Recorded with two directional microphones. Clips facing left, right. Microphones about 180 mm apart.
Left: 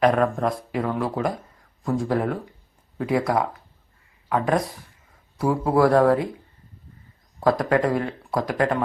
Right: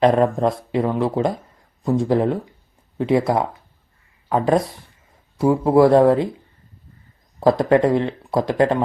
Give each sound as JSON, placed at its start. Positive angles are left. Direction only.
{"t": 0.0, "sound": "speech", "side_deg": -25}
{"t": 7.3, "sound": "speech", "side_deg": -25}